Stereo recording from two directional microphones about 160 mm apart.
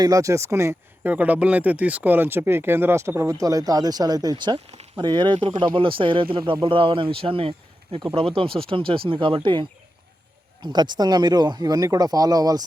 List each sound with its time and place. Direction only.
0.0 s speech: 20° right (ahead or behind); by 4.9 s 40° right (ahead or behind)
4.9 s speech: 30° right (ahead or behind)